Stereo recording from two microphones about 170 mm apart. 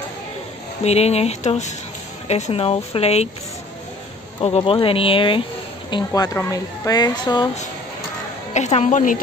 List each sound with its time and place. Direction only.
0.8 s speech: 40° left (ahead or behind)
4.4 s speech: 35° left (ahead or behind)
8.5 s a woman's voice: 40° left (ahead or behind)